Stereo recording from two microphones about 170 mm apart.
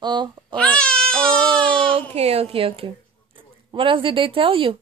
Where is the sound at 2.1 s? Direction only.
35° right (ahead or behind).